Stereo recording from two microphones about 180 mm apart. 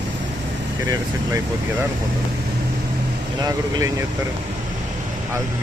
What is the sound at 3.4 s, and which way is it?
Speech, 20° right (ahead or behind).